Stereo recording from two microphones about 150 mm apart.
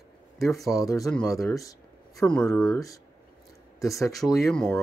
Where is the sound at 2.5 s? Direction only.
20° left (ahead or behind).